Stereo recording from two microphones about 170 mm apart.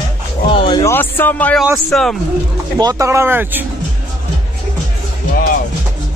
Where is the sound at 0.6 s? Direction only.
30° left (ahead or behind).